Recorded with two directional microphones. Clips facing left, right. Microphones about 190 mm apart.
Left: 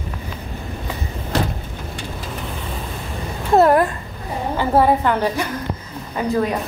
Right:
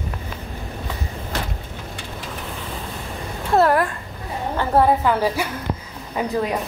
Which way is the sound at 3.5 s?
20° left (ahead or behind).